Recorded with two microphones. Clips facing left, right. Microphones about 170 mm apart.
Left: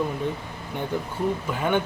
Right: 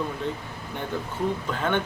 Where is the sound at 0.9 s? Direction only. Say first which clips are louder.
Left 1 dB; 15° left (ahead or behind).